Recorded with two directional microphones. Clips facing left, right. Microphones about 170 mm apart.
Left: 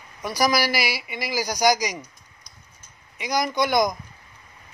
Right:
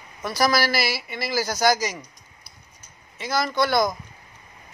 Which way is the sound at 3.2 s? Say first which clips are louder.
Even; 15° left (ahead or behind).